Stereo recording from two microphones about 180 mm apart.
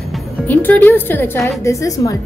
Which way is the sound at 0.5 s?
10° left (ahead or behind).